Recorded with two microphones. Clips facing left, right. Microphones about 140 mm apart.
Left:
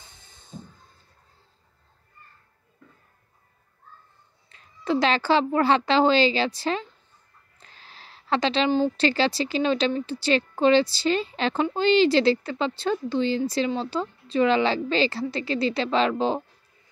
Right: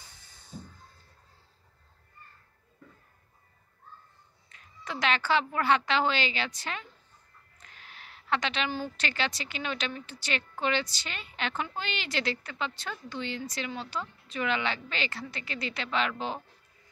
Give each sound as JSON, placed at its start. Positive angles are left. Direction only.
{"t": 0.0, "sound": "hiss", "side_deg": 25}
{"t": 4.5, "sound": "a woman's voice", "side_deg": 30}